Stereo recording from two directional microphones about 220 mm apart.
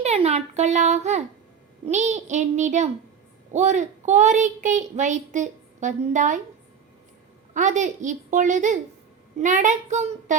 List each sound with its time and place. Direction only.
0.0 s a child's voice: 30° right (ahead or behind)
7.5 s a child's voice: 35° right (ahead or behind)